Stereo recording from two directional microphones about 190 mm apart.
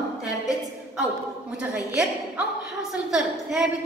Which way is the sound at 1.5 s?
5° right (ahead or behind).